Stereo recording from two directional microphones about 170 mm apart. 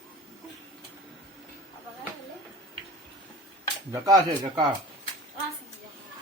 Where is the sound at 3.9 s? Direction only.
20° right (ahead or behind).